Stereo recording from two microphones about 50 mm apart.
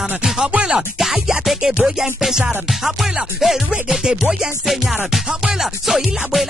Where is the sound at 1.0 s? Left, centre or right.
Centre.